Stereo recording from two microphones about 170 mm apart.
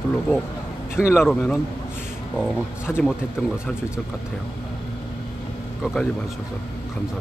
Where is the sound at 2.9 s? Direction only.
5° left (ahead or behind).